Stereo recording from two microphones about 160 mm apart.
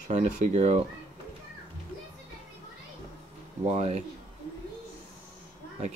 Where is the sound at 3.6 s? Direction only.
45° right (ahead or behind).